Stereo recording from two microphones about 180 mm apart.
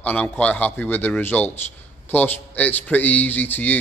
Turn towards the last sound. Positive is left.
turn(degrees=10)  # may be behind; listen again after turning